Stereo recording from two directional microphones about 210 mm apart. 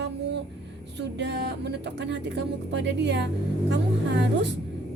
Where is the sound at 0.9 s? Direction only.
55° right (ahead or behind).